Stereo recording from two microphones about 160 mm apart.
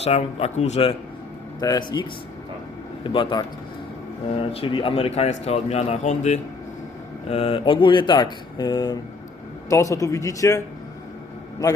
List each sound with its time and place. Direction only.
0.0 s speech: 40° left (ahead or behind)
1.5 s speech: 25° left (ahead or behind)